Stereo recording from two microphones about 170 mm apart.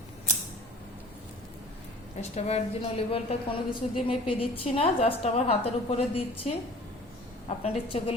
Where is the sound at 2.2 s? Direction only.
40° left (ahead or behind).